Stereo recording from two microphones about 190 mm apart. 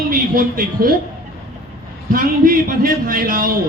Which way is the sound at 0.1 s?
50° right (ahead or behind).